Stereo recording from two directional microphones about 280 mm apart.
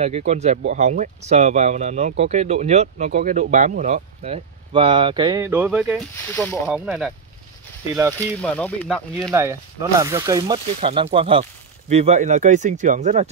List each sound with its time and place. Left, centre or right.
0.0 s speech: right; by 6.0 s centre
6.3 s speech: centre
8.4 s speech: centre
9.3 s speech: centre